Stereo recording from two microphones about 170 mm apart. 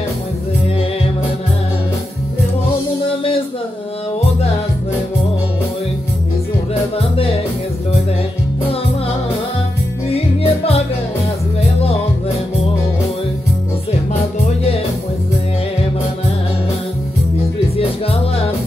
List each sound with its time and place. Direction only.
3.1 s music: 30° left (ahead or behind)
10.1 s music: 35° left (ahead or behind)
17.7 s music: 35° left (ahead or behind)